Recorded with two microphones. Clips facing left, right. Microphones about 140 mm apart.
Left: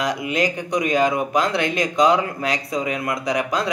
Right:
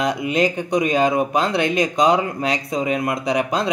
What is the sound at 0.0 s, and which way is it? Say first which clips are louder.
Speech: right 3 dB; 25° right (ahead or behind).